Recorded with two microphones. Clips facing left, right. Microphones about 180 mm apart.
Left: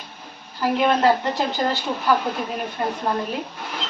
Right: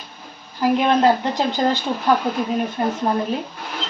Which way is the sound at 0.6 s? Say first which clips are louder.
Right 2 dB; 15° right (ahead or behind).